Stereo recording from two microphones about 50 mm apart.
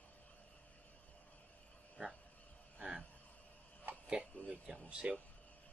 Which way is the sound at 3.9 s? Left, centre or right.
Right.